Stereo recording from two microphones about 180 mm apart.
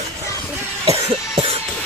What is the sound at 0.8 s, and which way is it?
Cough, 35° right (ahead or behind).